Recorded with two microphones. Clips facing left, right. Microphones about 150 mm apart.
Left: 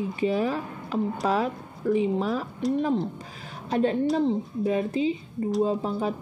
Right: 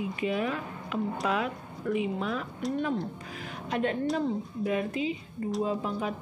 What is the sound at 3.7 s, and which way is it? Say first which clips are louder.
Speech: left 5 dB; 30° left (ahead or behind).